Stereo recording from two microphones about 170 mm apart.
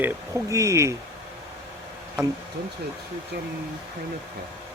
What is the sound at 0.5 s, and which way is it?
Speech, 20° right (ahead or behind).